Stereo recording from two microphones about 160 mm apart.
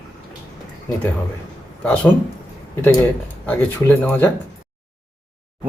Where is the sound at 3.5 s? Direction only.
15° left (ahead or behind).